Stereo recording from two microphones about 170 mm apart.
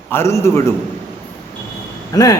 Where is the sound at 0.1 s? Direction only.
15° left (ahead or behind).